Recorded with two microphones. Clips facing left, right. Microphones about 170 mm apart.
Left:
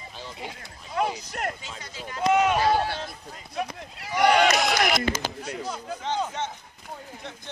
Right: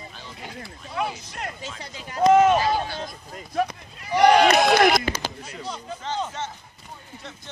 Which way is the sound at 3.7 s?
80° left.